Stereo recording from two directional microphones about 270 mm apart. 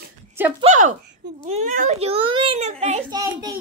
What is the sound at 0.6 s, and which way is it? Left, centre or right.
A child's voice, right.